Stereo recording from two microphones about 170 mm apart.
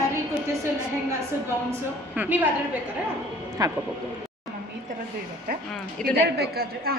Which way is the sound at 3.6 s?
20° right (ahead or behind).